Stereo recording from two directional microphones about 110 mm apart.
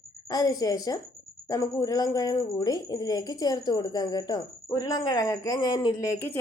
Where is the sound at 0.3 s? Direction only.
35° left (ahead or behind).